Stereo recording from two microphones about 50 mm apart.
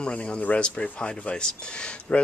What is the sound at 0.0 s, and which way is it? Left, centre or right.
Speech, left.